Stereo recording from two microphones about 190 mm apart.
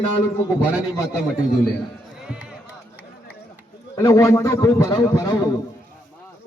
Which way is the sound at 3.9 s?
20° left (ahead or behind).